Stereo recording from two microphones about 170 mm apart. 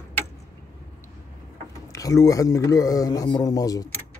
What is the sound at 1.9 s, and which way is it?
Speech, 20° left (ahead or behind).